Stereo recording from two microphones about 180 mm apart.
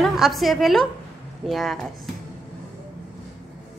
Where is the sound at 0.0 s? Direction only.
Centre (ahead or behind).